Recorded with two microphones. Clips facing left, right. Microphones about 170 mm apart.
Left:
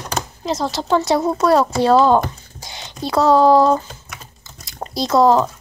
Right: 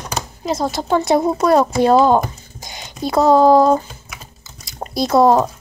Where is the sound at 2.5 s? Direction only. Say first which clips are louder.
Right 1 dB; 45° right (ahead or behind).